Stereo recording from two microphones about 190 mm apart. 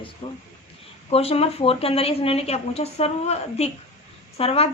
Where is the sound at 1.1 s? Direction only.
30° left (ahead or behind).